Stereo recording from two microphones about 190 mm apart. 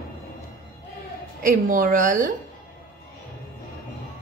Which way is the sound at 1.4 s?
45° right (ahead or behind).